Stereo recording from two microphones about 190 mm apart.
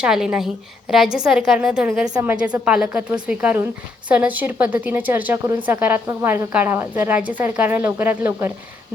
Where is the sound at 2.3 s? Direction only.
5° right (ahead or behind).